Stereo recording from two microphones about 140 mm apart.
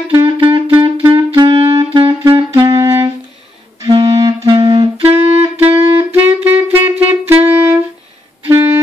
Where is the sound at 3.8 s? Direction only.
30° right (ahead or behind).